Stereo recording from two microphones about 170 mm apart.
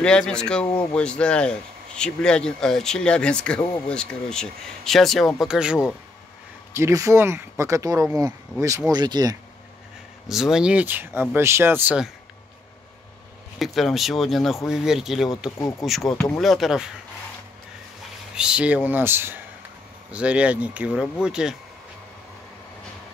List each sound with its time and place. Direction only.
0.0 s speech: 5° left (ahead or behind)
6.7 s speech: 15° right (ahead or behind)
10.2 s speech: centre (ahead or behind)
13.6 s speech: centre (ahead or behind)
18.3 s speech: 5° right (ahead or behind)